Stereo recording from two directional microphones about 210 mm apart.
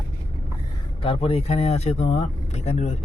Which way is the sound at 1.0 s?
25° left (ahead or behind).